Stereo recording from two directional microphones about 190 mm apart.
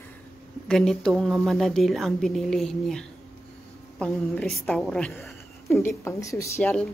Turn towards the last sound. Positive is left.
turn(degrees=5)  # may be behind; listen again after turning